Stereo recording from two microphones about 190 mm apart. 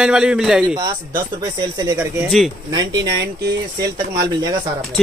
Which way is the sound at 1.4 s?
20° right (ahead or behind).